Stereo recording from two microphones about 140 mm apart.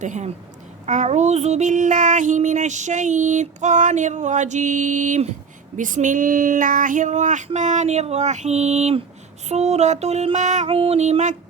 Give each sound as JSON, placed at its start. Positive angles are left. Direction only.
{"t": 0.0, "sound": "child singing", "side_deg": -60}
{"t": 9.5, "sound": "music", "side_deg": -50}
{"t": 10.7, "sound": "music", "side_deg": -45}